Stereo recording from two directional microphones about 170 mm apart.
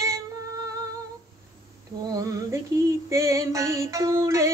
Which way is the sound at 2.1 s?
20° right (ahead or behind).